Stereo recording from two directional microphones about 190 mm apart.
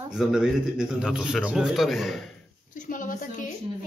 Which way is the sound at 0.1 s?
5° right (ahead or behind).